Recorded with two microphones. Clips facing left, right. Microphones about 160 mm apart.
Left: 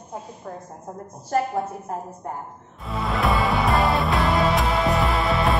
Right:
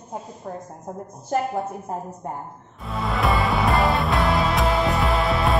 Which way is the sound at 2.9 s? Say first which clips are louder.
Even; centre (ahead or behind).